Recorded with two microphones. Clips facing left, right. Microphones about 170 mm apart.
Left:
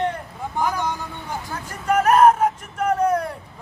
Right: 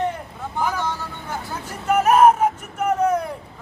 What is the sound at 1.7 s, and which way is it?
Vehicle, 5° right (ahead or behind).